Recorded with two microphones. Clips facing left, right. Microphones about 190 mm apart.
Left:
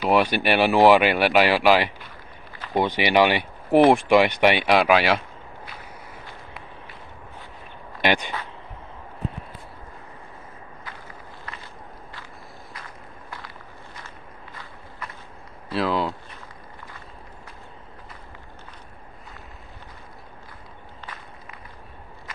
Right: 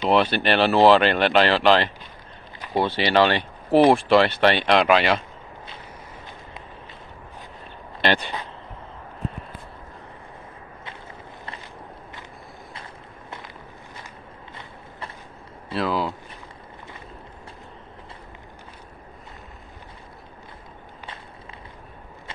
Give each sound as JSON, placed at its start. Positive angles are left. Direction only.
{"t": 0.1, "sound": "speech", "side_deg": 10}
{"t": 8.0, "sound": "speech", "side_deg": 15}
{"t": 14.0, "sound": "walk", "side_deg": -25}
{"t": 15.7, "sound": "speech", "side_deg": 0}